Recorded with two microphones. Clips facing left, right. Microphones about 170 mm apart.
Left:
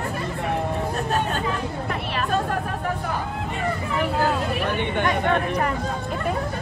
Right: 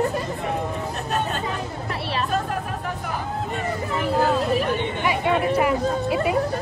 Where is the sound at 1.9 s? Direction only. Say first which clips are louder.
Right 3 dB; 30° right (ahead or behind).